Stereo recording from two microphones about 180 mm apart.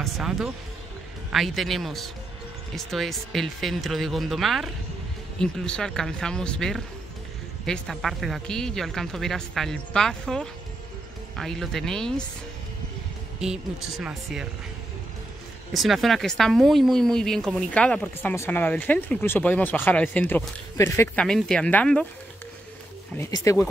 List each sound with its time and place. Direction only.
0.0 s speech: 5° right (ahead or behind)
13.4 s speech: centre (ahead or behind)
15.7 s speech: centre (ahead or behind)
23.1 s speech: 15° left (ahead or behind)